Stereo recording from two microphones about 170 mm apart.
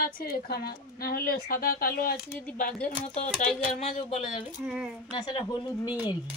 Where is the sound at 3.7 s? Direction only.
40° left (ahead or behind).